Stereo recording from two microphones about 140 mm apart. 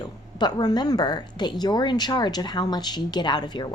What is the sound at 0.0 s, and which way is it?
A woman's voice, 30° left (ahead or behind).